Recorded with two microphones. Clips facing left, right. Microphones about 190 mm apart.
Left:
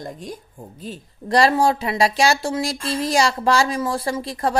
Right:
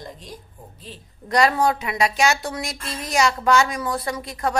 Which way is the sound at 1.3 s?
30° left (ahead or behind).